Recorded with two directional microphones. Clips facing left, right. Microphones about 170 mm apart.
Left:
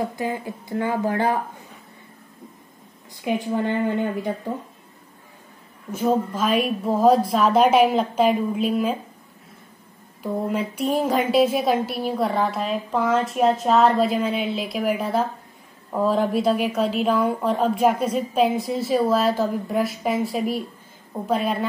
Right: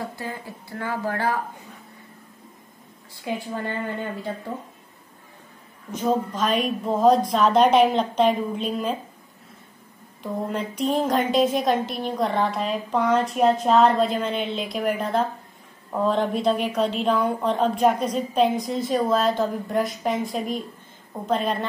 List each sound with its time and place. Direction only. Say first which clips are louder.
0.1 s speech: left 7 dB; 20° left (ahead or behind)
3.2 s a woman's voice: left 6 dB; 20° left (ahead or behind)
5.9 s speech: left 2 dB; 5° left (ahead or behind)
10.2 s a woman's voice: left 3 dB; 5° left (ahead or behind)